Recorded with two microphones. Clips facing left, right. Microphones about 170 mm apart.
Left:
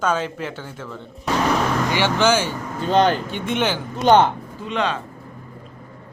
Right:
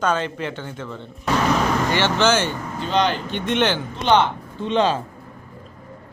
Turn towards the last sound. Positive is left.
turn(degrees=-30)  # may be behind; listen again after turning